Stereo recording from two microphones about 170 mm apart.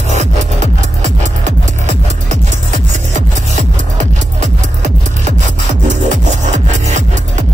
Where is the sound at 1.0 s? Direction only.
40° right (ahead or behind).